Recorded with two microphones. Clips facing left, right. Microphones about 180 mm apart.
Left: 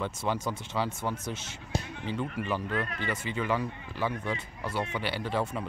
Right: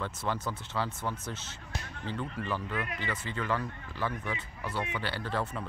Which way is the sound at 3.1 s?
10° left (ahead or behind).